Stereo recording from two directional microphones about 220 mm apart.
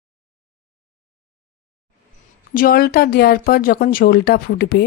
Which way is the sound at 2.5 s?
40° left (ahead or behind).